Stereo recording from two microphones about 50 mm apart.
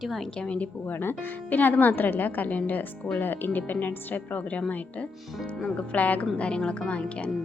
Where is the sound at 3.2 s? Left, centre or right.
Left.